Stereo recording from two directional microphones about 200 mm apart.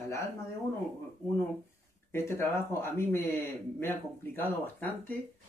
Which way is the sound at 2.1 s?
10° left (ahead or behind).